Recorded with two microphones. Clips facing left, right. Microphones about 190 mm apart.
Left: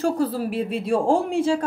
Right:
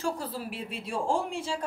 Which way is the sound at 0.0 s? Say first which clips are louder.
Left 10 dB; 40° left (ahead or behind).